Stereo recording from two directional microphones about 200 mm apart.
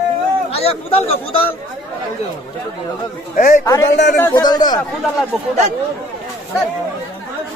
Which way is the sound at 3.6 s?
15° left (ahead or behind).